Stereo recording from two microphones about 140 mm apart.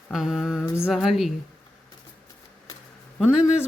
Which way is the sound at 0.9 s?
Centre (ahead or behind).